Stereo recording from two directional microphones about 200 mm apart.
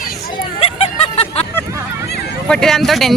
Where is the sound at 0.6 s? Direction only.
30° left (ahead or behind).